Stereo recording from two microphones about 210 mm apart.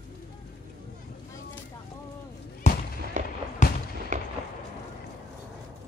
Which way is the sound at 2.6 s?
35° left (ahead or behind).